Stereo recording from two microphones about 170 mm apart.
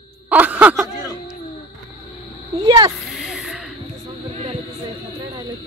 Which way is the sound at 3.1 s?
5° right (ahead or behind).